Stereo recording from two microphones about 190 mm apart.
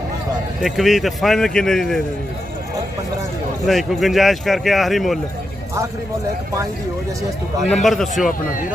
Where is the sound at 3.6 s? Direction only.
Centre (ahead or behind).